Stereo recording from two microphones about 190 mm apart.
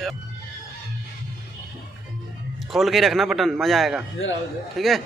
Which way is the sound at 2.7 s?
Centre (ahead or behind).